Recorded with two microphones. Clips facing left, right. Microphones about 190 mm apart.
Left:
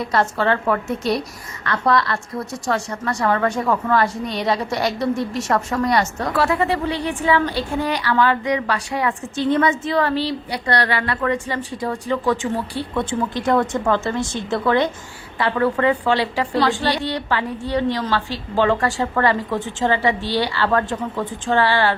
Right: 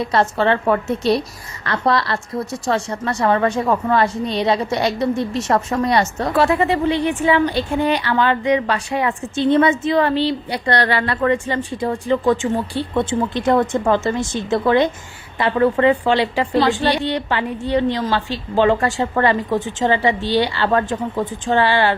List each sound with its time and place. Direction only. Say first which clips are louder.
0.0 s a woman's voice: right 2 dB; 25° right (ahead or behind)